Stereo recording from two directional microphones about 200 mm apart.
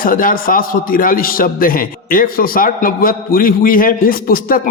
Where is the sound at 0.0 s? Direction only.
45° left (ahead or behind).